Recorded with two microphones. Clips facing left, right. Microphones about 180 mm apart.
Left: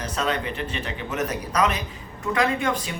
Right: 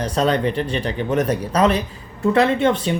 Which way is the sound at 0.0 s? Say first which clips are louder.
Right 8 dB; 35° right (ahead or behind).